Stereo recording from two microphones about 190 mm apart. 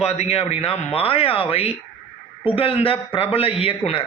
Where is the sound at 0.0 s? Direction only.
35° left (ahead or behind).